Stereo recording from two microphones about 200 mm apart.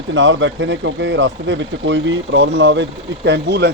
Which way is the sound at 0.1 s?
70° right (ahead or behind).